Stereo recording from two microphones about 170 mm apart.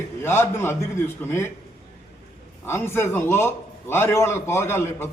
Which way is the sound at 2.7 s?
15° left (ahead or behind).